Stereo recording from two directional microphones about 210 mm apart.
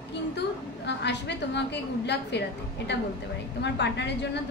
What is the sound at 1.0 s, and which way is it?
A woman's voice, 55° left (ahead or behind).